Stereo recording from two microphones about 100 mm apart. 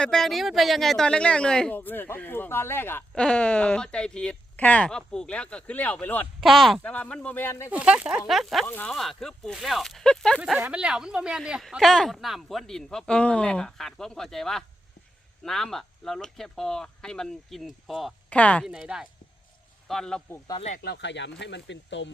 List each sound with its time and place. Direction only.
0.0 s speech: 5° left (ahead or behind)
1.7 s speech: 20° left (ahead or behind)
3.2 s speech: 10° left (ahead or behind)
6.4 s speech: centre (ahead or behind)
6.8 s speech: 10° left (ahead or behind)
7.7 s speech: 15° right (ahead or behind)
8.6 s speech: 20° left (ahead or behind)
8.9 s speech: centre (ahead or behind)
10.7 s speech: 10° right (ahead or behind)
18.3 s speech: 15° left (ahead or behind)
18.6 s speech: 5° right (ahead or behind)
19.9 s speech: 5° left (ahead or behind)